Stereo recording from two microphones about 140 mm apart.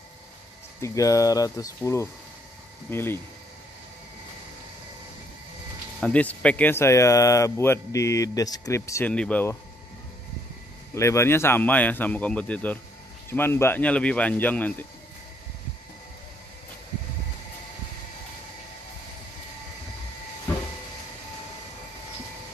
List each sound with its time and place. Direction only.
0.7 s speech: 20° left (ahead or behind)
5.9 s speech: 5° left (ahead or behind)
9.1 s speech: 10° left (ahead or behind)
11.0 s speech: 20° left (ahead or behind)